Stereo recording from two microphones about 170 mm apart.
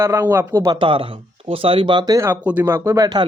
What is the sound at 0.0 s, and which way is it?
Speech, 15° right (ahead or behind).